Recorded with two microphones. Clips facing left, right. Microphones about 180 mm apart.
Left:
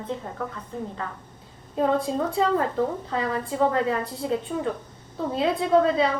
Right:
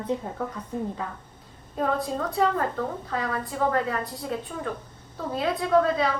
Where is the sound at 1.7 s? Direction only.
25° left (ahead or behind).